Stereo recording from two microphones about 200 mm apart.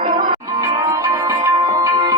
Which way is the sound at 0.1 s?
20° right (ahead or behind).